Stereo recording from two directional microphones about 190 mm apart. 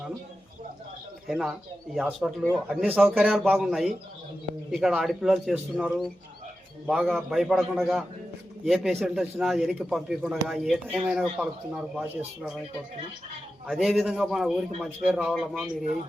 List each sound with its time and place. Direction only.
1.3 s a man's voice: centre (ahead or behind)
13.7 s a man's voice: centre (ahead or behind)